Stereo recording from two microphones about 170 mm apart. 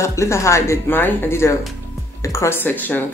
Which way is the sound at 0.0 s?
15° left (ahead or behind).